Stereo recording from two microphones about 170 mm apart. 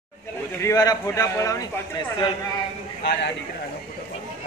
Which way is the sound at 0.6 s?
20° left (ahead or behind).